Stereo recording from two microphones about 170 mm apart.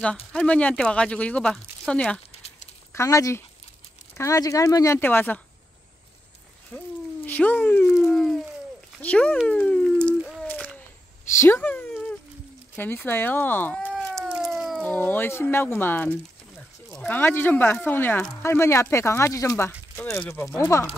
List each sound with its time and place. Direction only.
0.3 s speech: 5° left (ahead or behind)
2.9 s speech: 20° left (ahead or behind)
6.7 s speech: 5° left (ahead or behind)
8.0 s dog: centre (ahead or behind)
9.0 s speech: 10° left (ahead or behind)
9.5 s a sound: 10° left (ahead or behind)
12.7 s speech: 10° left (ahead or behind)
13.9 s cat: centre (ahead or behind)
14.9 s speech: 10° left (ahead or behind)